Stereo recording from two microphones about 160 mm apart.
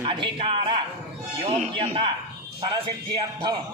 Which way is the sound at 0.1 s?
30° right (ahead or behind).